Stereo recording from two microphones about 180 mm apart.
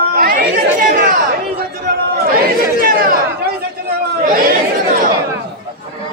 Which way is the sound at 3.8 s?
55° right (ahead or behind).